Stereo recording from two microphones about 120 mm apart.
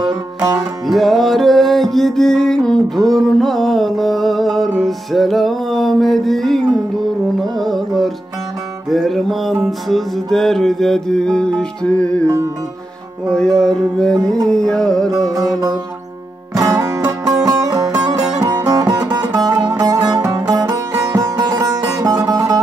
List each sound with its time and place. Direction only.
0.0 s music: 35° right (ahead or behind)
0.8 s music: centre (ahead or behind)
8.8 s music: centre (ahead or behind)
13.3 s music: 5° left (ahead or behind)
15.0 s music: 30° right (ahead or behind)